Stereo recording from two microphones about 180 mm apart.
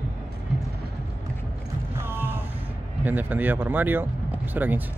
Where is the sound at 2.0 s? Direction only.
10° right (ahead or behind).